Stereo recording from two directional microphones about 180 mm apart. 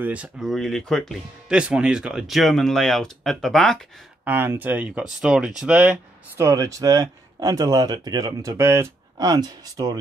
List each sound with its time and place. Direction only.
0.0 s speech: 5° right (ahead or behind)
4.2 s speech: 10° right (ahead or behind)